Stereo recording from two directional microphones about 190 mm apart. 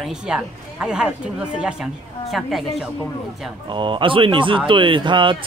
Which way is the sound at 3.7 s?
25° right (ahead or behind).